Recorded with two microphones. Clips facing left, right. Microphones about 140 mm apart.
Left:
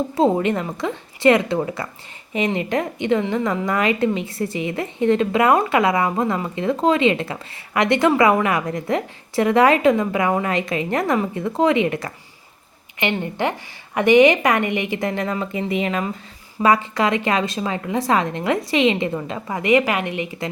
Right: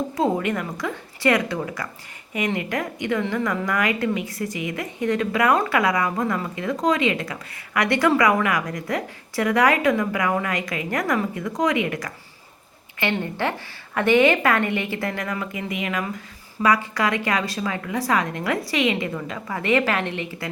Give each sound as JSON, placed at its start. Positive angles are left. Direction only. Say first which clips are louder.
{"t": 0.2, "sound": "a woman's voice", "louder": "left 5 dB", "side_deg": 25}